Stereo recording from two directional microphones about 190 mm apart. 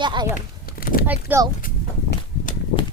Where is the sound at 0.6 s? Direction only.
50° left (ahead or behind).